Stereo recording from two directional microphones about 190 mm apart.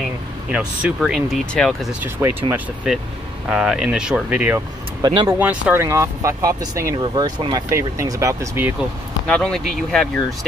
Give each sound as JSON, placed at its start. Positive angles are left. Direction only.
{"t": 0.5, "sound": "speech", "side_deg": -5}
{"t": 5.0, "sound": "speech", "side_deg": -25}
{"t": 5.4, "sound": "speech", "side_deg": -10}
{"t": 9.3, "sound": "speech", "side_deg": 5}